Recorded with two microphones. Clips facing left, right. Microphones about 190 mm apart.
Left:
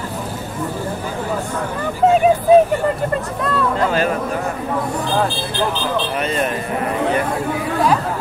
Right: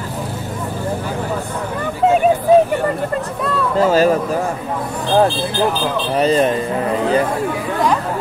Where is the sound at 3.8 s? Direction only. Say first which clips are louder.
Right 9 dB; 40° right (ahead or behind).